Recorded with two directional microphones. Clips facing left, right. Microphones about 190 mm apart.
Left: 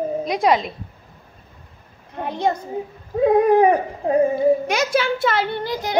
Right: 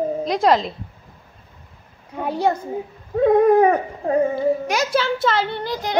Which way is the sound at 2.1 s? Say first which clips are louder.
Right 1 dB; 10° right (ahead or behind).